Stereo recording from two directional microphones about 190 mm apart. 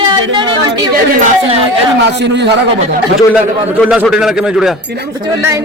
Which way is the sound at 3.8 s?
5° right (ahead or behind).